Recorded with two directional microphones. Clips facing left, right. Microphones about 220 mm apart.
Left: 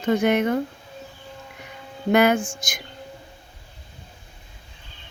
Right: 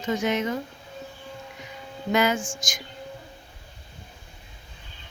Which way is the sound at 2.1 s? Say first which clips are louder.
Left 5 dB; 60° left (ahead or behind).